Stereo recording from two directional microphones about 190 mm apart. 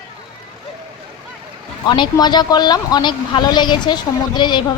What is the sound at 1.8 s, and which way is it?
Speech, 25° left (ahead or behind).